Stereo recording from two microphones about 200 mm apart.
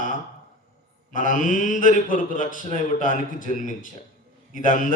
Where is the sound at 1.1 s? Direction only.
40° left (ahead or behind).